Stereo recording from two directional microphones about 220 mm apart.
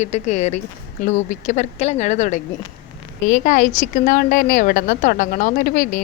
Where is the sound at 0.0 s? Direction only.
30° left (ahead or behind).